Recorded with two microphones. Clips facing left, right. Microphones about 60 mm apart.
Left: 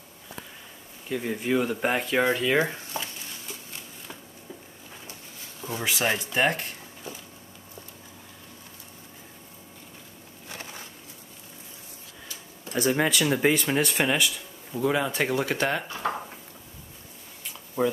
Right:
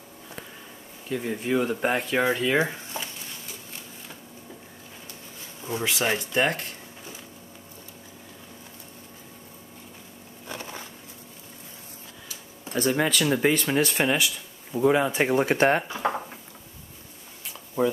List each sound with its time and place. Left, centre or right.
1.0 s speech: centre
2.7 s a sound: centre
5.8 s speech: centre
6.4 s speech: left
12.7 s speech: centre
14.8 s speech: centre
15.3 s speech: right
15.9 s speech: centre
17.8 s speech: centre